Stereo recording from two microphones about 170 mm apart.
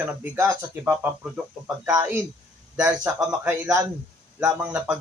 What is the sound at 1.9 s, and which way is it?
Speech, 15° right (ahead or behind).